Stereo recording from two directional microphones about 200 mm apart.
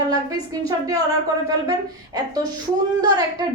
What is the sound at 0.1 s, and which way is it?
Speech, 15° right (ahead or behind).